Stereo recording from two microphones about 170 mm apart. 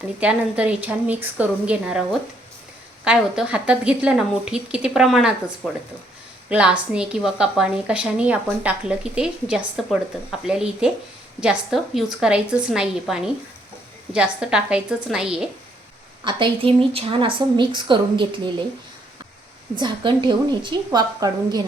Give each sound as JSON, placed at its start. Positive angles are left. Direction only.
{"t": 0.2, "sound": "a woman's voice", "side_deg": -5}
{"t": 3.0, "sound": "a woman's voice", "side_deg": -5}
{"t": 6.5, "sound": "a woman's voice", "side_deg": -5}
{"t": 16.2, "sound": "speech", "side_deg": -30}
{"t": 19.8, "sound": "speech", "side_deg": -25}